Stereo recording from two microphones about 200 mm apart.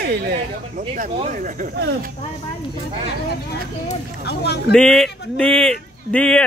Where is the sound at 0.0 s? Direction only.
50° right (ahead or behind).